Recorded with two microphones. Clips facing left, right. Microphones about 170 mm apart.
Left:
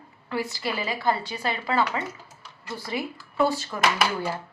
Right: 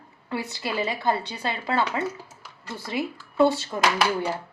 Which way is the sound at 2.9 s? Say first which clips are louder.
Right 4 dB; 25° right (ahead or behind).